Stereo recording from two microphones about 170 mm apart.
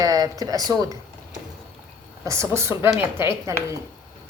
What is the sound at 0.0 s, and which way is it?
A woman's voice, 20° right (ahead or behind).